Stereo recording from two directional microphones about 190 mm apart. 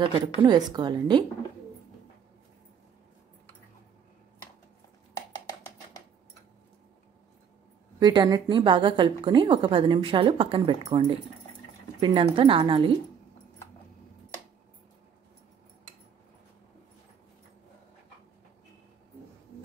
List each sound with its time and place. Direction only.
0.1 s a woman's voice: 25° right (ahead or behind)
8.0 s a woman's voice: 20° right (ahead or behind)